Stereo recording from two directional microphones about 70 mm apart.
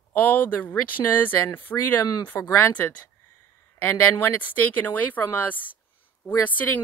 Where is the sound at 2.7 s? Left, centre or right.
Left.